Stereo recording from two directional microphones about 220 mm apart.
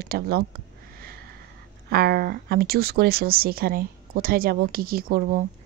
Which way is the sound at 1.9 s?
45° right (ahead or behind).